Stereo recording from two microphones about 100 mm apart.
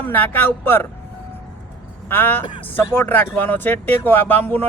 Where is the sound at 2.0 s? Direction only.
20° left (ahead or behind).